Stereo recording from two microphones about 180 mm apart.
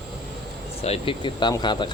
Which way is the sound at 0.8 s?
30° left (ahead or behind).